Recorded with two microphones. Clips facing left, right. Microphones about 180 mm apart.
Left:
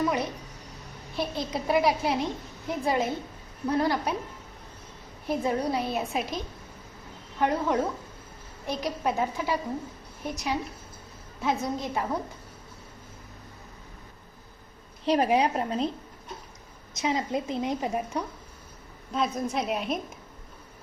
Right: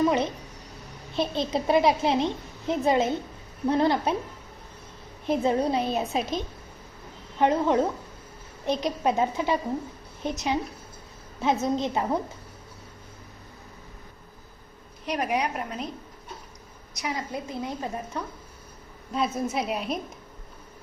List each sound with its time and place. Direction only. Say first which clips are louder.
1.1 s a child's voice: right 4 dB; 25° right (ahead or behind)
5.2 s a child's voice: right 3 dB; 25° right (ahead or behind)
15.0 s a woman's voice: left 4 dB; 30° left (ahead or behind)
16.9 s a woman's voice: left 4 dB; 25° left (ahead or behind)
19.1 s a woman's voice: right 1 dB; 5° right (ahead or behind)